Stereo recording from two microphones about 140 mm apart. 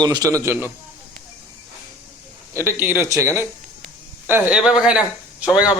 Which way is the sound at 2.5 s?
15° right (ahead or behind).